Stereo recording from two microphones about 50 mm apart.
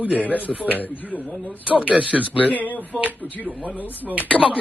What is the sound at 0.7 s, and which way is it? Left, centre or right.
Speech, left.